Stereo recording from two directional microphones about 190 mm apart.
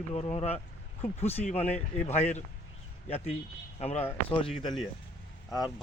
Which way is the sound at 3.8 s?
30° left (ahead or behind).